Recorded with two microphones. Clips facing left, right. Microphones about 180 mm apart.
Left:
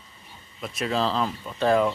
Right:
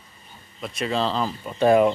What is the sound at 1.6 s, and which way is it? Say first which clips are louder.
Speech: right 4 dB; 15° right (ahead or behind).